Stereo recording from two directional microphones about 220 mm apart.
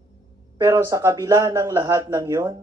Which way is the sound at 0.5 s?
15° right (ahead or behind).